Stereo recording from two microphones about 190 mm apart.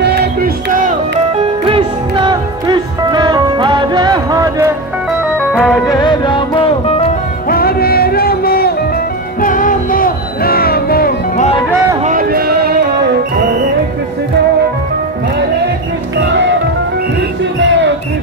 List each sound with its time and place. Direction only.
0.0 s music: 55° right (ahead or behind)
1.3 s music: 30° right (ahead or behind)
5.5 s music: centre (ahead or behind)
5.9 s music: 20° left (ahead or behind)
7.4 s music: 50° left (ahead or behind)
12.0 s music: 45° right (ahead or behind)
16.2 s music: 65° right (ahead or behind)